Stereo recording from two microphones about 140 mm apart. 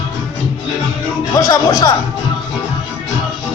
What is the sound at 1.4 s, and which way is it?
Speech, 30° left (ahead or behind).